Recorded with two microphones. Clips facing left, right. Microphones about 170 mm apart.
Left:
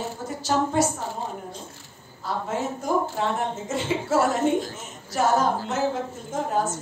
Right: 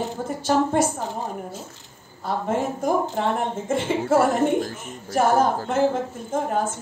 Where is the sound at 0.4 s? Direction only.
55° right (ahead or behind).